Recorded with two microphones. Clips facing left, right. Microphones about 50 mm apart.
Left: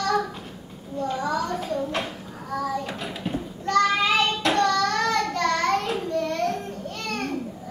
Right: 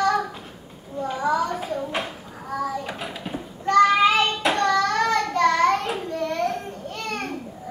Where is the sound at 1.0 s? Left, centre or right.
Centre.